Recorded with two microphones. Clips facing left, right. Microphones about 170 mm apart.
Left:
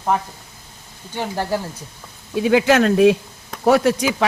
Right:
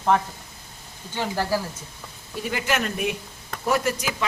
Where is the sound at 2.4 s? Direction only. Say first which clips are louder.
Left 11 dB; 90° left.